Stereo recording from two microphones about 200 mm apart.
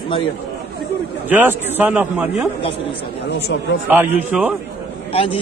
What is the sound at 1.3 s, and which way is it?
A man's voice, 10° right (ahead or behind).